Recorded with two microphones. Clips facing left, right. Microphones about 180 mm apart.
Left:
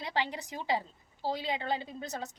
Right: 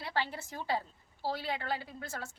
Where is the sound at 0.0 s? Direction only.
15° left (ahead or behind).